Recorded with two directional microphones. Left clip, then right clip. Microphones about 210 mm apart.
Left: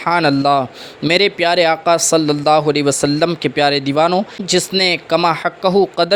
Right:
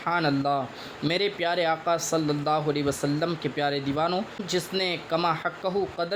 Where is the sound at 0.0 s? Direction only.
40° left (ahead or behind).